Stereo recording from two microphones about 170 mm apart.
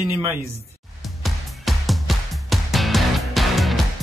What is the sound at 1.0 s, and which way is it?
Music, centre (ahead or behind).